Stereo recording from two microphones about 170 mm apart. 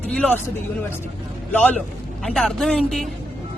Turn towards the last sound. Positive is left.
turn(degrees=5)  # may be behind; listen again after turning